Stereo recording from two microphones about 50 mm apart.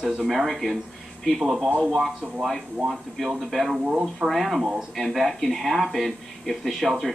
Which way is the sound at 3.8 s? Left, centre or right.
Centre.